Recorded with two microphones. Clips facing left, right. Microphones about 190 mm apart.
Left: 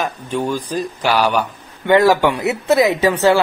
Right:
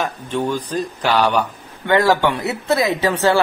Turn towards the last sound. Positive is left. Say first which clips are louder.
# left 4 dB
turn(degrees=20)  # may be behind; listen again after turning